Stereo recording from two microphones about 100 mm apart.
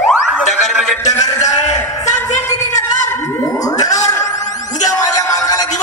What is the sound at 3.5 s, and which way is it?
Music, 35° left (ahead or behind).